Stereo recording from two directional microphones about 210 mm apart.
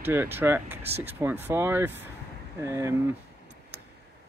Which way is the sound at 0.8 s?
30° right (ahead or behind).